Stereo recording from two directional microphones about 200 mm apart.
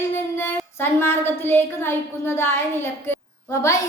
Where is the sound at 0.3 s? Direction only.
10° left (ahead or behind).